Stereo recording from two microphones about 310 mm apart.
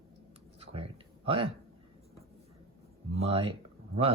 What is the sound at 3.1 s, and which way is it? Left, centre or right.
Speech, centre.